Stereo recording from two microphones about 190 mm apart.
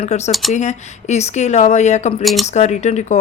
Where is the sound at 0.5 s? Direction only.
35° left (ahead or behind).